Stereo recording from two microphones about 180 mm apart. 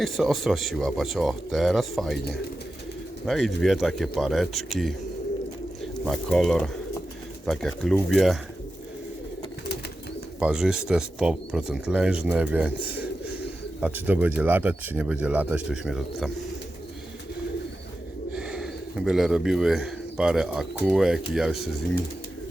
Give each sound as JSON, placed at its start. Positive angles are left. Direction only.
{"t": 0.0, "sound": "speech", "side_deg": 0}
{"t": 3.2, "sound": "speech", "side_deg": 0}
{"t": 6.1, "sound": "speech", "side_deg": 0}
{"t": 10.4, "sound": "speech", "side_deg": -5}
{"t": 18.3, "sound": "speech", "side_deg": -5}